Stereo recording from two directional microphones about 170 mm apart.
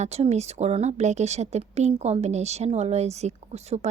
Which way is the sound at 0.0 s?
40° right (ahead or behind).